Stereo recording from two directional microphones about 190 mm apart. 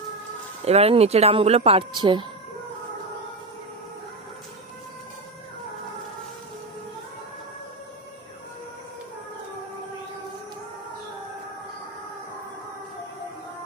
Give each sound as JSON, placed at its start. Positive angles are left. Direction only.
{"t": 0.6, "sound": "speech", "side_deg": -35}